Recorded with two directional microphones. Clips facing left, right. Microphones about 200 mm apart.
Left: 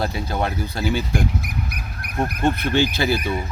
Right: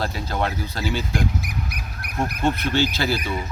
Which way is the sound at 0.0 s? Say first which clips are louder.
Left 2 dB; 15° left (ahead or behind).